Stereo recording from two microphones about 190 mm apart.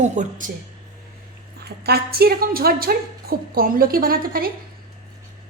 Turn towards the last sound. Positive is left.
turn(degrees=-50)  # may be behind; listen again after turning